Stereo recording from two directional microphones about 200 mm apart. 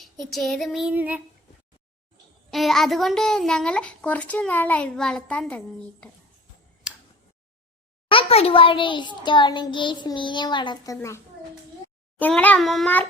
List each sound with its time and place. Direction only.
0.0 s a child's voice: centre (ahead or behind)
2.5 s a child's voice: centre (ahead or behind)
6.8 s tick: 5° right (ahead or behind)
8.1 s a child's voice: 30° left (ahead or behind)
12.2 s a child's voice: 10° left (ahead or behind)